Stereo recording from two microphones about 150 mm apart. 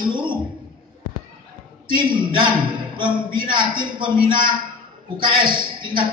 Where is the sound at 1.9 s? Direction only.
30° right (ahead or behind).